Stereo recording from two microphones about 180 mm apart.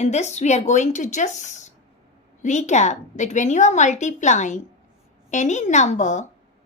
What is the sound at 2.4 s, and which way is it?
A woman's voice, 40° left (ahead or behind).